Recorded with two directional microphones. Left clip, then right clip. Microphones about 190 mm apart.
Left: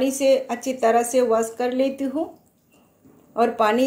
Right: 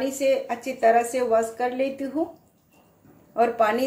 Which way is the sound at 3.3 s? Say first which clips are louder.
Left 2 dB; 20° left (ahead or behind).